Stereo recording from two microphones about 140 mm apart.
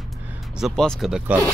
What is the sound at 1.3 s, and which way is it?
Speech, 10° right (ahead or behind).